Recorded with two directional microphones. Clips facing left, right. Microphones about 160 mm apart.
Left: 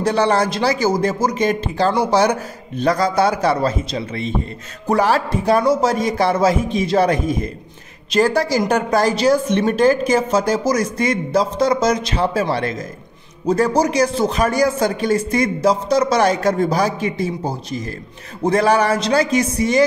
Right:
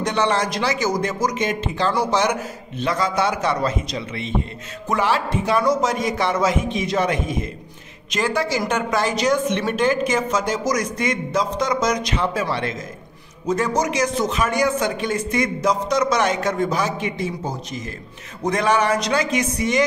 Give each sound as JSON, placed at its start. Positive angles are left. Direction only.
{"t": 0.0, "sound": "speech", "side_deg": 35}